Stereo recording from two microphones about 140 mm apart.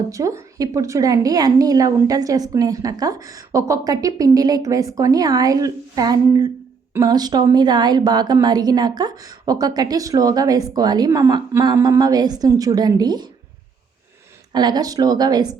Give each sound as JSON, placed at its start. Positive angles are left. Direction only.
{"t": 0.1, "sound": "a woman's voice", "side_deg": -25}
{"t": 14.5, "sound": "a woman's voice", "side_deg": -30}